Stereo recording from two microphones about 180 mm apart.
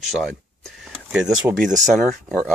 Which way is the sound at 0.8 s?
5° right (ahead or behind).